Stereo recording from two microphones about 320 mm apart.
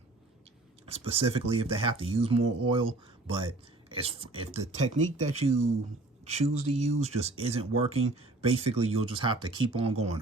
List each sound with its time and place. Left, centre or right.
0.9 s speech: centre